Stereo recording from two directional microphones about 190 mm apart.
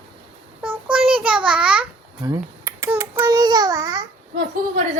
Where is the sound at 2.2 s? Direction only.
15° right (ahead or behind).